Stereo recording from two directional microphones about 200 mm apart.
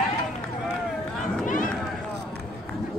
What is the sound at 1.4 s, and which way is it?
Run, 40° left (ahead or behind).